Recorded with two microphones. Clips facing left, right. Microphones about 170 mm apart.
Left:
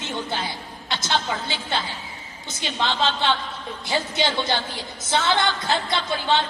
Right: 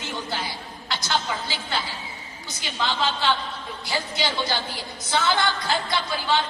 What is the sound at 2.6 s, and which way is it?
A man's voice, 25° left (ahead or behind).